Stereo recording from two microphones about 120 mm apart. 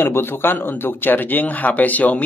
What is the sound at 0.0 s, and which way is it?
Speech, 20° left (ahead or behind).